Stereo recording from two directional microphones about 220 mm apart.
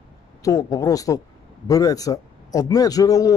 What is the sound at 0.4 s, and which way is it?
A man's voice, 15° left (ahead or behind).